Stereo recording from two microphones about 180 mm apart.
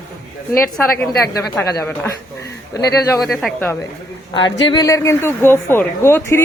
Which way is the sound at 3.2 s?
Centre (ahead or behind).